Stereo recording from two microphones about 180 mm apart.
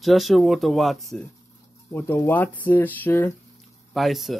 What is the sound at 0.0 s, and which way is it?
Speech, centre (ahead or behind).